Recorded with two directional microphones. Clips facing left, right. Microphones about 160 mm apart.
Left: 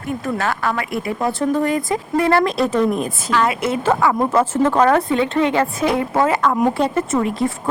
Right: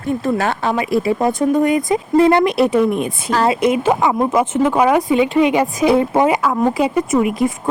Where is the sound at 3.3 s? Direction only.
35° right (ahead or behind).